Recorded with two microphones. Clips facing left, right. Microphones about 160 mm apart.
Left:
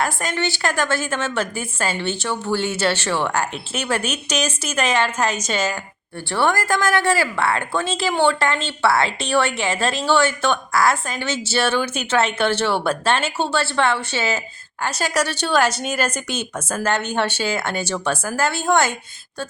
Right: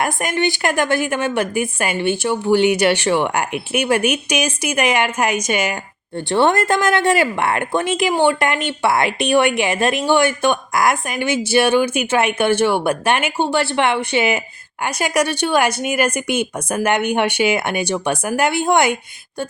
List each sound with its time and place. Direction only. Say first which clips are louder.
0.0 s speech: right 4 dB; 15° right (ahead or behind)